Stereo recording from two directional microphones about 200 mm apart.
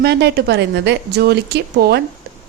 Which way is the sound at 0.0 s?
55° right (ahead or behind).